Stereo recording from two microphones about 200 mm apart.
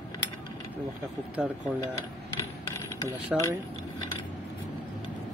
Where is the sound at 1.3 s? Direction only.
5° right (ahead or behind).